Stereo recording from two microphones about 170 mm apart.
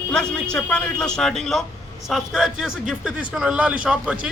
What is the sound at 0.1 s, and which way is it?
A man's voice, 5° left (ahead or behind).